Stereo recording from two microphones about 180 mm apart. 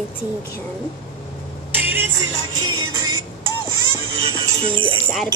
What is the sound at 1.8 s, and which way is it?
Music, 10° right (ahead or behind).